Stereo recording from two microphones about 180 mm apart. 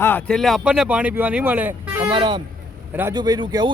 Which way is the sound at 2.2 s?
25° right (ahead or behind).